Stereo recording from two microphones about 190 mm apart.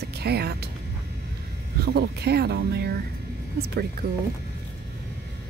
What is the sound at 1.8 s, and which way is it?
A woman's voice, 60° right (ahead or behind).